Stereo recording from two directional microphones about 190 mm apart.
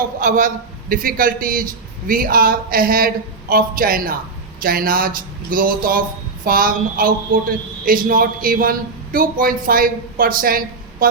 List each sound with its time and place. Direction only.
0.2 s a man's voice: 45° right (ahead or behind)